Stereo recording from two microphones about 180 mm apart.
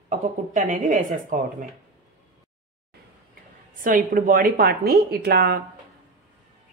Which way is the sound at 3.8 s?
50° right (ahead or behind).